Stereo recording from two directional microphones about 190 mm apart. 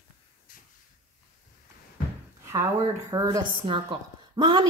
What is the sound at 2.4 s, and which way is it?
Speech, 15° right (ahead or behind).